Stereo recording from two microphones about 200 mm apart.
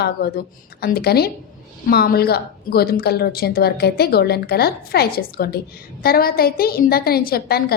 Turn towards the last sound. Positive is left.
turn(degrees=50)  # may be behind; listen again after turning